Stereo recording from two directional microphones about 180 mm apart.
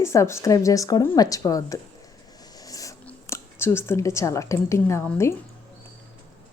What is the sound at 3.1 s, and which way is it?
Speech, 15° left (ahead or behind).